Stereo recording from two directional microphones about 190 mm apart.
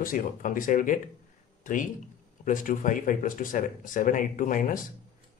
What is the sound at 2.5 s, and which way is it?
Speech, 45° left (ahead or behind).